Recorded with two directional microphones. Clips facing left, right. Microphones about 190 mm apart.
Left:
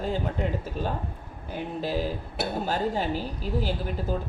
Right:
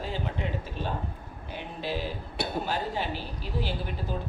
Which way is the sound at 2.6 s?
45° left (ahead or behind).